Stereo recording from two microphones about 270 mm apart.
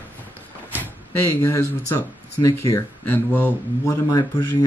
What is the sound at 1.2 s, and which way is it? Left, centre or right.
Speech, centre.